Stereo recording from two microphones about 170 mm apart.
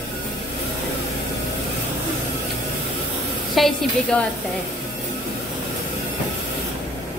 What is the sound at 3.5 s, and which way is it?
Speech, 5° left (ahead or behind).